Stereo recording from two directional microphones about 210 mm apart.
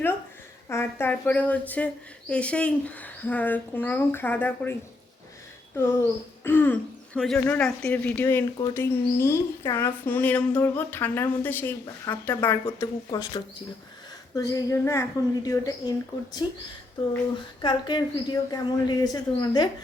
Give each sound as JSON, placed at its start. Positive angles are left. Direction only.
{"t": 0.7, "sound": "speech", "side_deg": 10}
{"t": 5.7, "sound": "speech", "side_deg": 15}
{"t": 17.6, "sound": "speech", "side_deg": 20}